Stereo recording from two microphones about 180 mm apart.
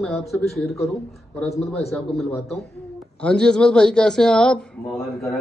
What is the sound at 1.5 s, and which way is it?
Speech, 35° left (ahead or behind).